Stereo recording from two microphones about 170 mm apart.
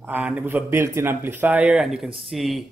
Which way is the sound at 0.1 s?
10° right (ahead or behind).